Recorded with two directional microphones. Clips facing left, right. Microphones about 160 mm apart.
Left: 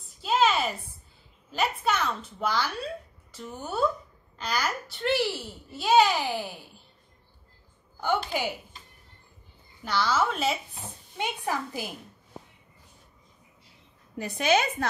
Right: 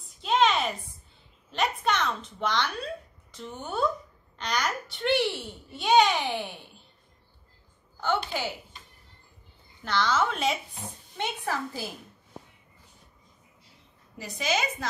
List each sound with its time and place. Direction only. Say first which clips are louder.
0.2 s a sound: even; 5° left (ahead or behind)
1.5 s speech: even; 5° left (ahead or behind)
8.0 s a woman's voice: left 1 dB; 15° left (ahead or behind)
9.8 s speech: even; 10° left (ahead or behind)
11.1 s a woman's voice: left 1 dB; 15° left (ahead or behind)
14.1 s a woman's voice: left 5 dB; 60° left (ahead or behind)